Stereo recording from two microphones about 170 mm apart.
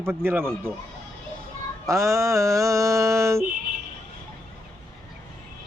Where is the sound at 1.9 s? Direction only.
15° right (ahead or behind).